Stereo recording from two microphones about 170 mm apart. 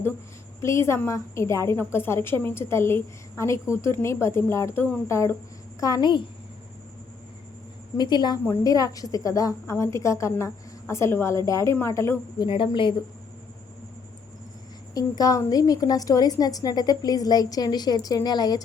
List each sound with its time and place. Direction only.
0.6 s a woman's voice: 15° left (ahead or behind)
7.9 s a woman's voice: 25° left (ahead or behind)
12.5 s a woman's voice: 30° left (ahead or behind)
14.9 s a woman's voice: 20° left (ahead or behind)